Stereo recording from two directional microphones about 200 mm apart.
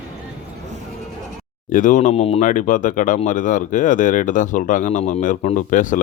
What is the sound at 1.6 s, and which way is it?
Speech, 40° left (ahead or behind).